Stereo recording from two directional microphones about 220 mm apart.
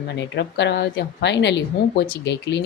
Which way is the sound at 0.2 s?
55° left (ahead or behind).